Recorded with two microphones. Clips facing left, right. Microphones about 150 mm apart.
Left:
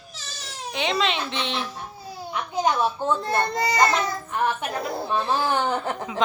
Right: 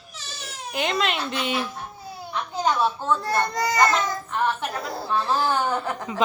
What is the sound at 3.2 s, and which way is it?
Speech, 25° left (ahead or behind).